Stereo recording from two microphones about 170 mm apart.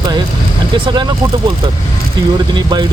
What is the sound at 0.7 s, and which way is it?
Speech, 30° right (ahead or behind).